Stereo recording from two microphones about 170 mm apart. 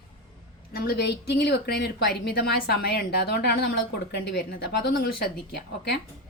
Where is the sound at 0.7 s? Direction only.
65° left (ahead or behind).